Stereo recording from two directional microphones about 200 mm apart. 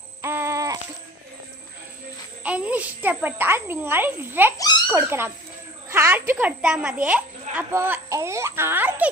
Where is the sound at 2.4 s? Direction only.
5° right (ahead or behind).